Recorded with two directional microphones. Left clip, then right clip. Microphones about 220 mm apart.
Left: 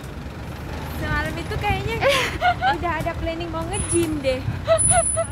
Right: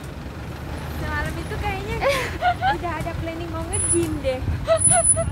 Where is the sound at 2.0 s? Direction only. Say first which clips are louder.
Left 2 dB; 10° left (ahead or behind).